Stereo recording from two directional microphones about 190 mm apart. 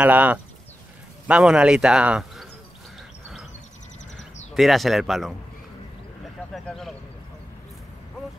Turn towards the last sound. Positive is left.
turn(degrees=0)  # may be behind; listen again after turning